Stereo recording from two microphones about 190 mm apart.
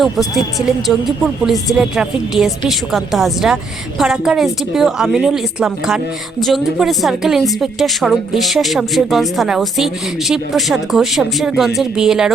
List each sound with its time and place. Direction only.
0.0 s a woman's voice: centre (ahead or behind)